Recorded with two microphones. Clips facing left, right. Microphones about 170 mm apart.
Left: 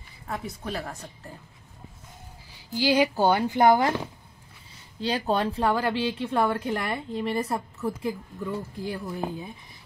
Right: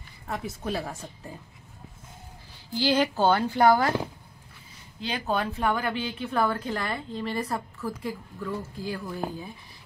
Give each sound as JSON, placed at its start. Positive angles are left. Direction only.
{"t": 0.3, "sound": "speech", "side_deg": -5}
{"t": 2.7, "sound": "speech", "side_deg": 10}
{"t": 5.0, "sound": "a woman's voice", "side_deg": 35}